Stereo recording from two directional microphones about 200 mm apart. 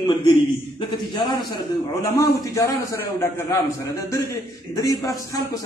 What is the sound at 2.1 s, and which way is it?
A man's voice, 15° left (ahead or behind).